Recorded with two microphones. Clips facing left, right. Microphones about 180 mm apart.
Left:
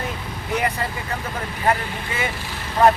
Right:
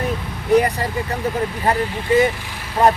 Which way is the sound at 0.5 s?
35° right (ahead or behind).